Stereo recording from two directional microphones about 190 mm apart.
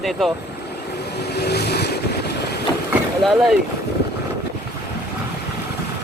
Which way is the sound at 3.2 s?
Centre (ahead or behind).